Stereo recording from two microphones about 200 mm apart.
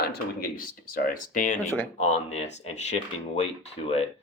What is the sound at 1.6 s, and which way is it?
Speech, 10° left (ahead or behind).